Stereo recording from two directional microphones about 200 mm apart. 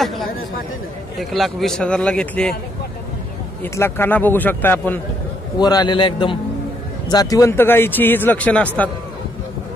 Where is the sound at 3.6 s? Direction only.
10° left (ahead or behind).